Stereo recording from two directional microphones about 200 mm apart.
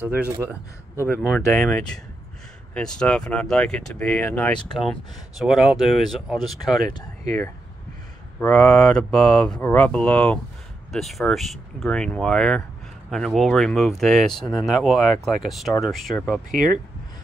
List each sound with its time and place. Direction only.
0.0 s speech: 10° right (ahead or behind)
0.9 s speech: 10° left (ahead or behind)
6.9 s speech: 20° left (ahead or behind)
8.4 s speech: 5° left (ahead or behind)